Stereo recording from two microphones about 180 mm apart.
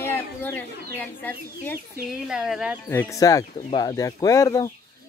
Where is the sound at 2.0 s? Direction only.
5° right (ahead or behind).